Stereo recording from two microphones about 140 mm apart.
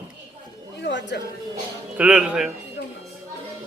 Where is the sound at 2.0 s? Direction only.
10° right (ahead or behind).